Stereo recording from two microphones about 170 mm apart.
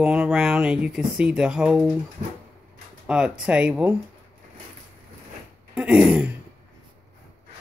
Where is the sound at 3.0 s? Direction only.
5° right (ahead or behind).